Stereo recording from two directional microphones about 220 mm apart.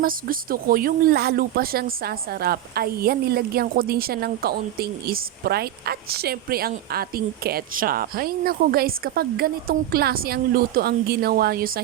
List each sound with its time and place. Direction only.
0.0 s speech: 40° right (ahead or behind)